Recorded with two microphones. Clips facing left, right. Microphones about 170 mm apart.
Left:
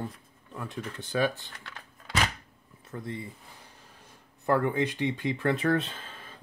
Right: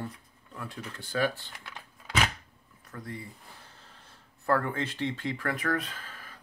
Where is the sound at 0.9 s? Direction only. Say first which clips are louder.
Left 1 dB; 20° left (ahead or behind).